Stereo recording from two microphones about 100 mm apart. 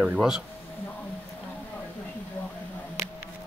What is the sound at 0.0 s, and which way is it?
Speech, 5° right (ahead or behind).